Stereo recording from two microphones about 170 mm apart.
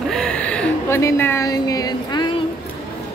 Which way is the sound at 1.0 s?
15° left (ahead or behind).